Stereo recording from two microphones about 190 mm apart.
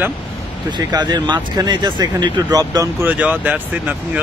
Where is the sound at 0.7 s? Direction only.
20° right (ahead or behind).